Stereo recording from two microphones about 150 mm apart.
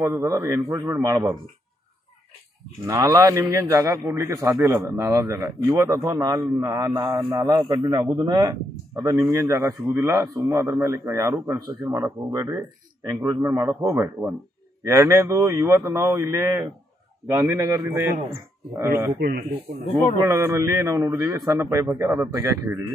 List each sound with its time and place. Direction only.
0.0 s speech: 20° right (ahead or behind)
2.9 s speech: 25° right (ahead or behind)
19.1 s speech: 75° right (ahead or behind)
20.2 s speech: 20° right (ahead or behind)